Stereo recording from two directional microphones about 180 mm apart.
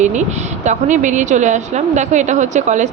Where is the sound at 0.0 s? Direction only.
40° right (ahead or behind).